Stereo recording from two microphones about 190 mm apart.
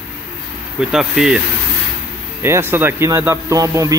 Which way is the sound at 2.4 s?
10° right (ahead or behind).